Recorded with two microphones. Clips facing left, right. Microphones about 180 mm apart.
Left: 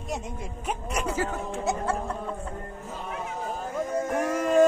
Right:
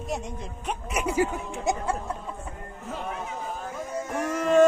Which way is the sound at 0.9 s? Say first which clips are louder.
Right 4 dB; 15° right (ahead or behind).